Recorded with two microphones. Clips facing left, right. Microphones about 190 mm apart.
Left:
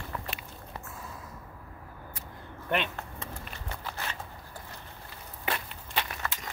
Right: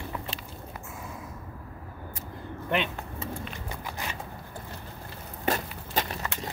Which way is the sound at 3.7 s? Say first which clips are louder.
Left 1 dB; 15° right (ahead or behind).